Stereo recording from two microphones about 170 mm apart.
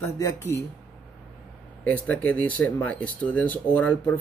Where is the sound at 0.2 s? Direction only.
15° left (ahead or behind).